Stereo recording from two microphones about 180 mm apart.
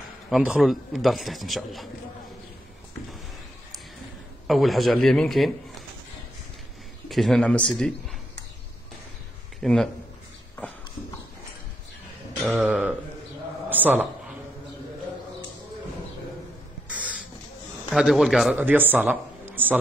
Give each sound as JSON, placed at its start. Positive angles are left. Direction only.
{"t": 0.3, "sound": "a man's voice", "side_deg": -5}
{"t": 4.5, "sound": "a man's voice", "side_deg": 0}
{"t": 7.1, "sound": "a man's voice", "side_deg": 0}
{"t": 9.6, "sound": "speech", "side_deg": 5}
{"t": 12.4, "sound": "a sound", "side_deg": -5}
{"t": 13.7, "sound": "a man's voice", "side_deg": -10}
{"t": 17.8, "sound": "a man's voice", "side_deg": -5}